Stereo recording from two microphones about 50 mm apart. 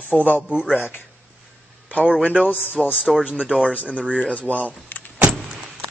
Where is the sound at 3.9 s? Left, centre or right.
Right.